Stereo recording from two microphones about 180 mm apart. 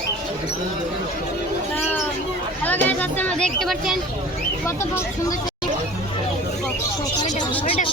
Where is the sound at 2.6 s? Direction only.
10° left (ahead or behind).